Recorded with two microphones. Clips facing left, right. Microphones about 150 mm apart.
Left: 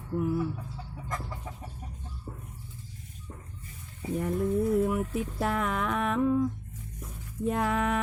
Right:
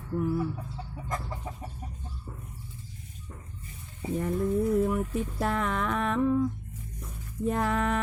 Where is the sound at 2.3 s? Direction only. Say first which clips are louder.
Left 3 dB; 40° left (ahead or behind).